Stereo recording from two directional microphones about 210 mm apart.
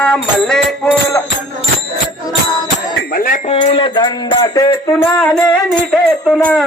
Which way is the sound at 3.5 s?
25° left (ahead or behind).